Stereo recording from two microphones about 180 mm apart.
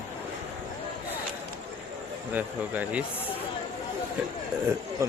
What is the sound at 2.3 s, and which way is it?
Speech, 10° right (ahead or behind).